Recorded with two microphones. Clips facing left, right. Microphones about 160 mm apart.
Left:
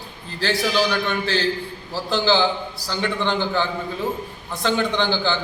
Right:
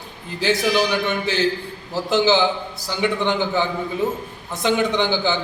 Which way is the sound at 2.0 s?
20° right (ahead or behind).